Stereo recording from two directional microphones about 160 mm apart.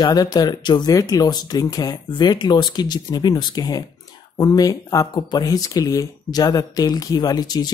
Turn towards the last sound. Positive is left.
turn(degrees=25)  # may be behind; listen again after turning